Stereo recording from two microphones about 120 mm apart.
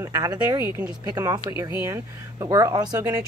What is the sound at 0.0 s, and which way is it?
Speech, 30° right (ahead or behind).